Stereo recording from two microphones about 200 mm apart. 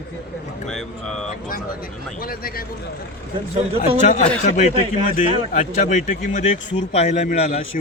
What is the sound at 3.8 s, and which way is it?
A man's voice, 35° left (ahead or behind).